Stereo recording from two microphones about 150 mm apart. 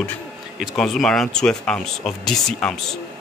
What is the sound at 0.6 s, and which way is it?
Speech, centre (ahead or behind).